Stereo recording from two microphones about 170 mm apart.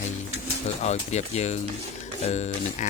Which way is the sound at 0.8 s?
40° left (ahead or behind).